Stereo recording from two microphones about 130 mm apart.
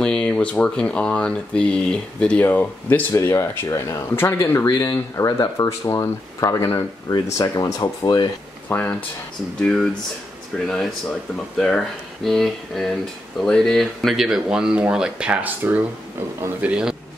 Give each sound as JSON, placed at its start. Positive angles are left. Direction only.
{"t": 0.0, "sound": "speech", "side_deg": 5}
{"t": 8.6, "sound": "speech", "side_deg": 15}